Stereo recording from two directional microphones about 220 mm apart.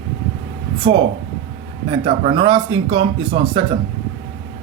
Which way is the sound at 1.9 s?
25° right (ahead or behind).